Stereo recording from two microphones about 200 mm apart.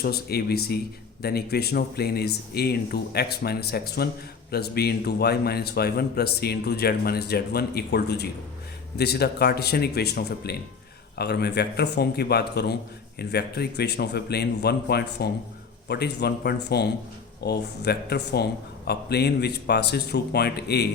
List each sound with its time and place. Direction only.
0.0 s a man's voice: 50° left (ahead or behind)